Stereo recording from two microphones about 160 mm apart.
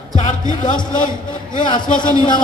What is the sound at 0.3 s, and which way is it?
Music, 55° left (ahead or behind).